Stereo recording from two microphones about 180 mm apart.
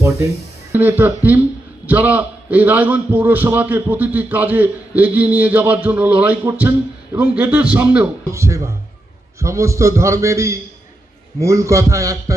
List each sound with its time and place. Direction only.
0.7 s a man's voice: 10° right (ahead or behind)